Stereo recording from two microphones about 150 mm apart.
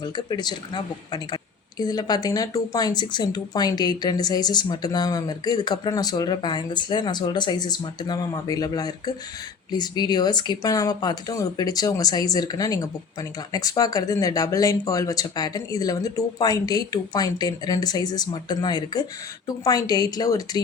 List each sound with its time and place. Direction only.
0.0 s speech: 30° left (ahead or behind)